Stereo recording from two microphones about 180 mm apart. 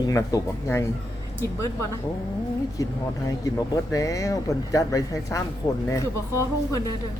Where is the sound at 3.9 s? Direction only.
20° left (ahead or behind).